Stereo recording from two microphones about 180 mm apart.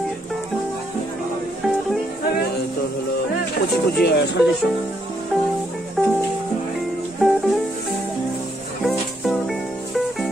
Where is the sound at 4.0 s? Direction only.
70° left (ahead or behind).